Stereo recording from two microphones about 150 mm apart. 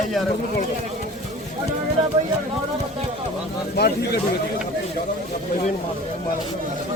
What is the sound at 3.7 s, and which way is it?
Speech, 90° left.